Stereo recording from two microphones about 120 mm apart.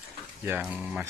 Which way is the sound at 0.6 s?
5° right (ahead or behind).